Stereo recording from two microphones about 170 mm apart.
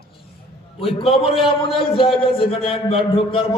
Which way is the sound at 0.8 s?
30° left (ahead or behind).